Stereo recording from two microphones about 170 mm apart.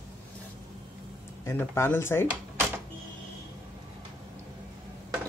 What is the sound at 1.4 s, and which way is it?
Speech, 15° left (ahead or behind).